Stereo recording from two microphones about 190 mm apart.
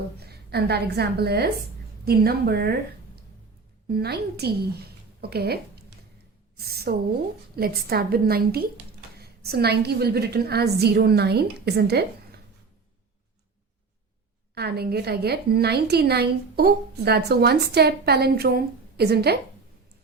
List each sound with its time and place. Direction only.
0.2 s a woman's voice: 55° right (ahead or behind)
3.8 s a woman's voice: 55° right (ahead or behind)
14.5 s a woman's voice: 55° right (ahead or behind)